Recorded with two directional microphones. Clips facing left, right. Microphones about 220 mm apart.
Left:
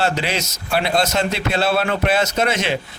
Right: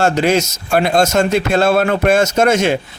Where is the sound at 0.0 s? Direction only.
45° right (ahead or behind).